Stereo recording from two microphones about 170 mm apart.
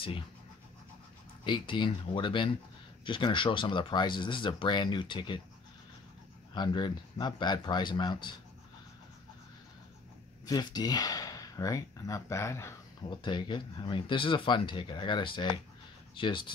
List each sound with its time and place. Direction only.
1.4 s speech: 25° left (ahead or behind)
6.5 s speech: 25° left (ahead or behind)
10.4 s speech: 25° left (ahead or behind)
13.2 s speech: 25° left (ahead or behind)